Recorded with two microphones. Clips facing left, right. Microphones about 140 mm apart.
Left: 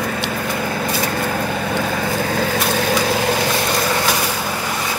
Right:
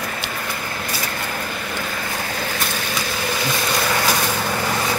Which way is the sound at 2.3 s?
90° left.